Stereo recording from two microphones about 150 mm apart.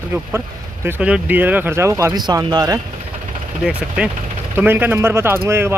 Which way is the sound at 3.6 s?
5° right (ahead or behind).